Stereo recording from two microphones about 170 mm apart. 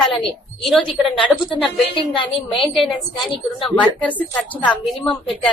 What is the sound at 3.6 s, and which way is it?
A woman's voice, 5° left (ahead or behind).